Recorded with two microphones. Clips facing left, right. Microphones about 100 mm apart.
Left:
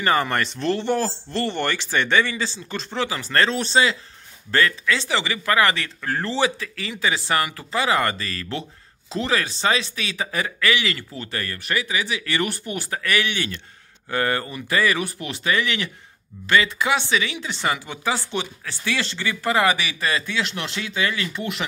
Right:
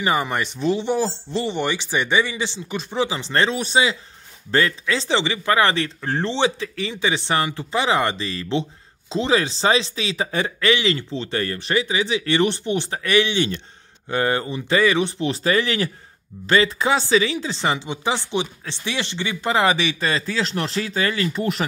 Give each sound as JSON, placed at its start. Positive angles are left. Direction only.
{"t": 0.0, "sound": "speech", "side_deg": -15}
{"t": 4.5, "sound": "speech", "side_deg": -30}